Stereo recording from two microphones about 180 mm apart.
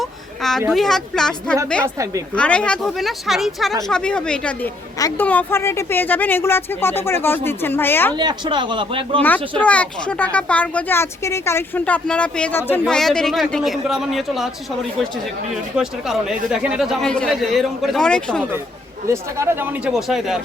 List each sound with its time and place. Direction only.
0.0 s children playing: centre (ahead or behind)
0.7 s speech: centre (ahead or behind)
4.9 s a woman's voice: 20° left (ahead or behind)
5.2 s speech: 10° left (ahead or behind)
8.1 s speech: 25° right (ahead or behind)
9.2 s speech: 10° left (ahead or behind)
15.7 s speech: 5° right (ahead or behind)
19.0 s speech: 15° right (ahead or behind)
20.0 s speech: centre (ahead or behind)